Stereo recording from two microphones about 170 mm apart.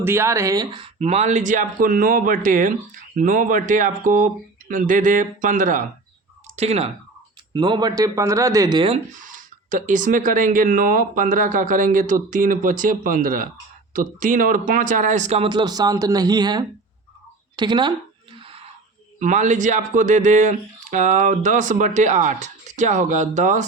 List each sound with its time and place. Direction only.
0.0 s speech: 15° right (ahead or behind)
0.9 s speech: 40° right (ahead or behind)
6.6 s speech: 40° right (ahead or behind)
7.5 s a man's voice: 25° right (ahead or behind)
9.1 s a man's voice: 50° right (ahead or behind); by 17.9 s 25° right (ahead or behind)
19.2 s speech: 45° right (ahead or behind)